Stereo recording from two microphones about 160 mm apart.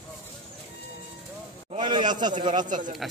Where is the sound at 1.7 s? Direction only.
30° right (ahead or behind).